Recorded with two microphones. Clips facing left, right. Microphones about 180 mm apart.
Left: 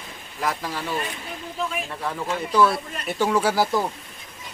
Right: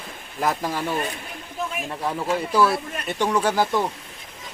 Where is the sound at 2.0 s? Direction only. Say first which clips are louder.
Right 4 dB; 10° right (ahead or behind); by 3.8 s 5° left (ahead or behind).